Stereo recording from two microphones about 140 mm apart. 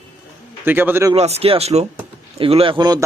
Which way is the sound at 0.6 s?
15° right (ahead or behind).